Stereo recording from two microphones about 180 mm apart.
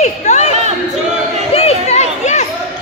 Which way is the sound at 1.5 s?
35° left (ahead or behind).